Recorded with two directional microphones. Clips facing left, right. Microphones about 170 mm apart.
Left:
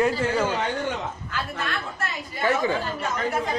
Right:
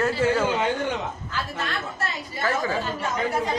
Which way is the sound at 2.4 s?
25° left (ahead or behind).